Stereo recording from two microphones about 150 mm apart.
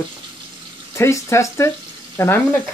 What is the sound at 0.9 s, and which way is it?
Speech, 20° left (ahead or behind).